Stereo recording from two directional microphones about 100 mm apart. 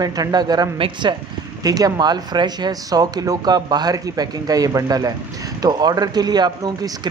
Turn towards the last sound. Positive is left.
turn(degrees=-45)  # may be behind; listen again after turning